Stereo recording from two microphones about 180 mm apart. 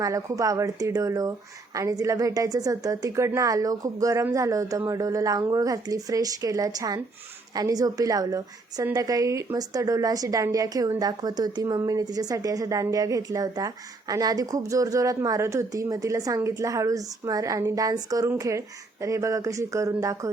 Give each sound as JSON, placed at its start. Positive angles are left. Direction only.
{"t": 0.0, "sound": "a woman's voice", "side_deg": -20}